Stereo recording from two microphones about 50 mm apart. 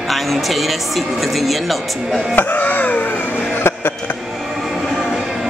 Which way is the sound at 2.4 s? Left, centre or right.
Left.